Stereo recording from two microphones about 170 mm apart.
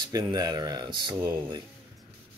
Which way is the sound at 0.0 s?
25° right (ahead or behind).